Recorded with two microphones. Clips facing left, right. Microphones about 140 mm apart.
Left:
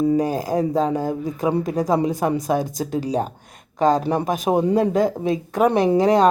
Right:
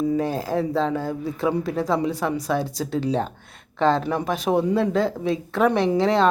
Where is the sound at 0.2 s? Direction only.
15° left (ahead or behind).